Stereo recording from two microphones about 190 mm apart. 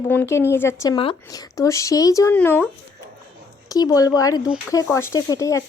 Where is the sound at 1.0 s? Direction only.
30° left (ahead or behind).